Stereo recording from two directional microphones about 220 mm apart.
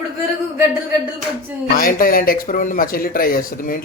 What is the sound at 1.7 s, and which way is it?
Speech, 40° left (ahead or behind).